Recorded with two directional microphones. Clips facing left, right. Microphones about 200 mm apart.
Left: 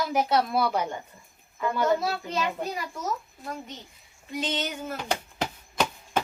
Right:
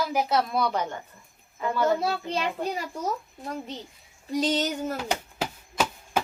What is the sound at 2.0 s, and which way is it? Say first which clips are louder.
Female singing: right 1 dB; 30° right (ahead or behind).